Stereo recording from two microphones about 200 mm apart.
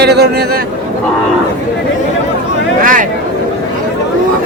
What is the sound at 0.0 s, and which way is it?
Speech, 55° right (ahead or behind).